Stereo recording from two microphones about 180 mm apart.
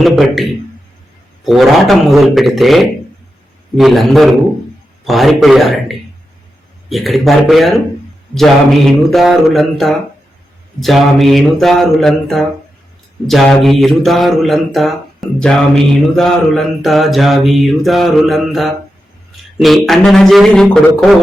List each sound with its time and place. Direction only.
0.0 s speech: centre (ahead or behind)
1.5 s speech: centre (ahead or behind)
8.9 s speech: centre (ahead or behind)